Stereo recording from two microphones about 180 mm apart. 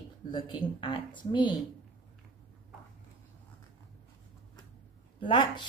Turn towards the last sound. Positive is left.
turn(degrees=25)  # may be behind; listen again after turning